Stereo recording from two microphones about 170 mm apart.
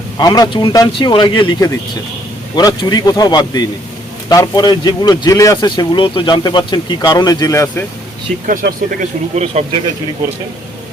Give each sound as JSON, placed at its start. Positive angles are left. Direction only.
{"t": 0.2, "sound": "speech", "side_deg": 25}
{"t": 8.6, "sound": "speech", "side_deg": -55}